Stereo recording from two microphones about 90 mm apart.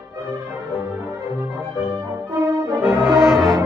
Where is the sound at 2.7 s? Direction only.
30° right (ahead or behind).